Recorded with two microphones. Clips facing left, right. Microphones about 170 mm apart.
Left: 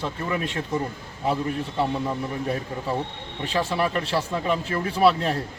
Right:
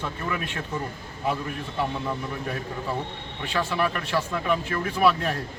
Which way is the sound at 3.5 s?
35° left (ahead or behind).